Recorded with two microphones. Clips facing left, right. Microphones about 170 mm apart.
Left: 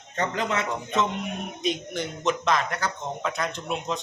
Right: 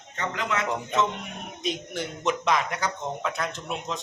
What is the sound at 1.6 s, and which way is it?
A man's voice, 5° right (ahead or behind).